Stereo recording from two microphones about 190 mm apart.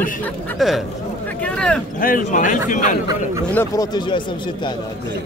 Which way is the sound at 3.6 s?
20° left (ahead or behind).